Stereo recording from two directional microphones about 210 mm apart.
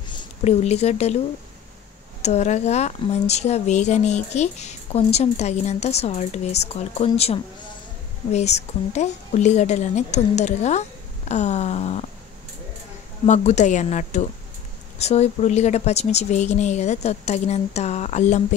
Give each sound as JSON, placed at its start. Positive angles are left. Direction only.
{"t": 0.1, "sound": "speech", "side_deg": 25}
{"t": 2.2, "sound": "a woman's voice", "side_deg": 35}
{"t": 13.2, "sound": "a woman's voice", "side_deg": 35}